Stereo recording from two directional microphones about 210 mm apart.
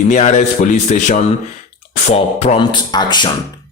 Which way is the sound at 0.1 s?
35° left (ahead or behind).